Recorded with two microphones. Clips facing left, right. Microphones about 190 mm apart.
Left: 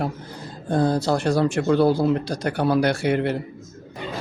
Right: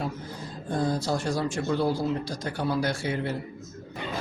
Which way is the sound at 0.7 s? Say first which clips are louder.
Left 6 dB; 65° left (ahead or behind).